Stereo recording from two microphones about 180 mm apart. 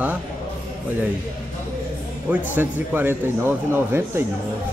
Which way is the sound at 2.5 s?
10° right (ahead or behind).